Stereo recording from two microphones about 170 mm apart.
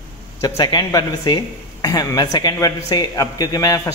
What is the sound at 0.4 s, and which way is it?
A man's voice, 20° left (ahead or behind).